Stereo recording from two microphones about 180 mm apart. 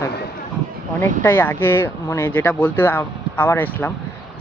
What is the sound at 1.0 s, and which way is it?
Speech, 10° left (ahead or behind).